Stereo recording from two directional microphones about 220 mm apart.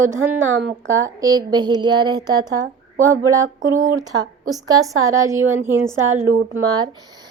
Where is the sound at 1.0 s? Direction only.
15° right (ahead or behind).